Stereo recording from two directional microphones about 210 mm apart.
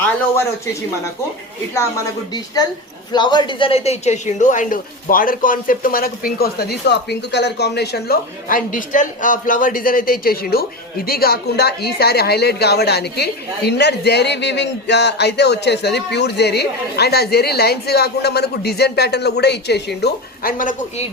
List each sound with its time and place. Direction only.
0.0 s speech: 10° left (ahead or behind)
3.1 s a woman's voice: 20° left (ahead or behind); by 20.7 s 40° left (ahead or behind)